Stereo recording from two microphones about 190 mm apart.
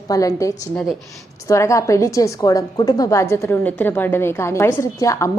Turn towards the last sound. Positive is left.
turn(degrees=15)  # may be behind; listen again after turning